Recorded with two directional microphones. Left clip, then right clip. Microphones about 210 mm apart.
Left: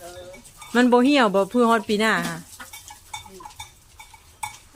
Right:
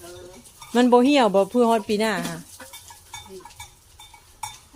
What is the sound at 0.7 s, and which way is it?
Speech, 5° left (ahead or behind).